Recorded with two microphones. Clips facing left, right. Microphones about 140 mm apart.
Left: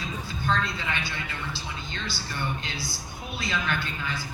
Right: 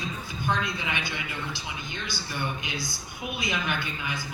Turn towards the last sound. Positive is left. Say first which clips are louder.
# left 1 dB
turn(degrees=-15)  # may be behind; listen again after turning